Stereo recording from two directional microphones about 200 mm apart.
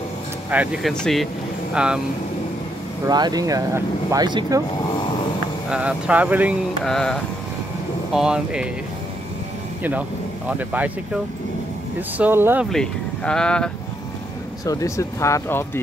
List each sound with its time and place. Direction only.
0.5 s speech: 5° right (ahead or behind)
3.1 s speech: 20° right (ahead or behind)
5.7 s speech: 5° right (ahead or behind)
10.6 s speech: 10° right (ahead or behind)
12.2 s speech: 10° right (ahead or behind)
12.6 s speech: 5° left (ahead or behind)
14.6 s speech: 15° left (ahead or behind)